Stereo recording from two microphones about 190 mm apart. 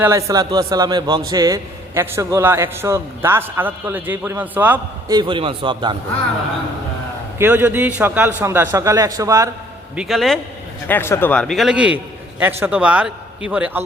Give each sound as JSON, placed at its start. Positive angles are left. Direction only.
{"t": 0.0, "sound": "a man's voice", "side_deg": -15}
{"t": 5.0, "sound": "a man's voice", "side_deg": -25}
{"t": 7.3, "sound": "a man's voice", "side_deg": -10}
{"t": 9.9, "sound": "a man's voice", "side_deg": 0}